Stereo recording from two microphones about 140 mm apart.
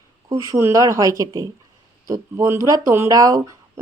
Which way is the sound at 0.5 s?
20° right (ahead or behind).